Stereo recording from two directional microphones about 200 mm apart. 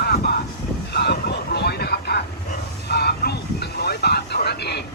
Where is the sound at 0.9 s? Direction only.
55° left (ahead or behind).